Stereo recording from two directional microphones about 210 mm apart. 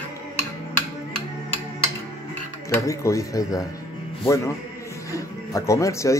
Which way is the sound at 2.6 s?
15° left (ahead or behind).